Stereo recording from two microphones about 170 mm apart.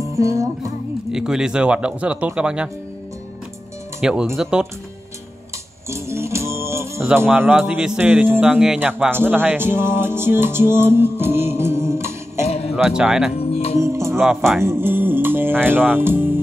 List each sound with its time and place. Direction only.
0.1 s music: 20° right (ahead or behind)
1.1 s speech: 5° right (ahead or behind)
4.0 s speech: 5° right (ahead or behind)
5.9 s music: 15° right (ahead or behind)
7.1 s a man's voice: 10° right (ahead or behind)
12.7 s speech: 5° right (ahead or behind)
13.3 s music: 35° left (ahead or behind)
13.7 s music: 15° right (ahead or behind)
14.2 s speech: centre (ahead or behind)
14.6 s speech: 15° right (ahead or behind)